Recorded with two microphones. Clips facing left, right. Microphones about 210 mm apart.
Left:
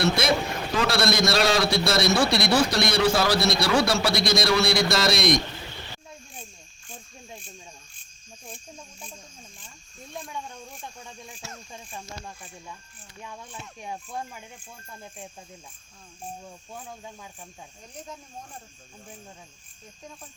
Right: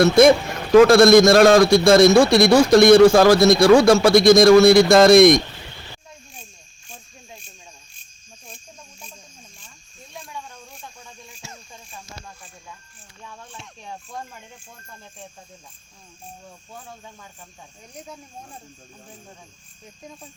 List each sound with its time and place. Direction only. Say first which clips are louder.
0.8 s a man's voice: right 14 dB; 50° right (ahead or behind)
13.6 s speech: left 2 dB; 10° left (ahead or behind)